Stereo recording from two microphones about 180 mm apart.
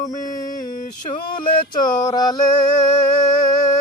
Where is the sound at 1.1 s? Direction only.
35° left (ahead or behind).